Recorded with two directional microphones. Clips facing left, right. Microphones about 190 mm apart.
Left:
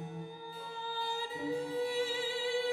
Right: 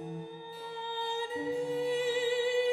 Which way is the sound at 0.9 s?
20° right (ahead or behind).